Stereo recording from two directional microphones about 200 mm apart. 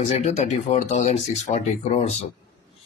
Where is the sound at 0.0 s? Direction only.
35° left (ahead or behind).